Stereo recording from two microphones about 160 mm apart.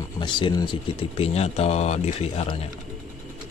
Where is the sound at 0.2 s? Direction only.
30° left (ahead or behind).